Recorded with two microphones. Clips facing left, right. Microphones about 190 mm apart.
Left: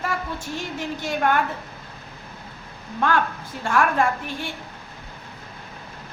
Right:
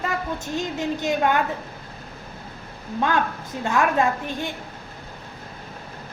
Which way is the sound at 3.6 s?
20° right (ahead or behind).